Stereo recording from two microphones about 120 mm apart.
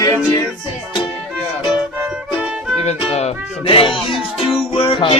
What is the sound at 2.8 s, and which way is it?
Speech, 65° left (ahead or behind).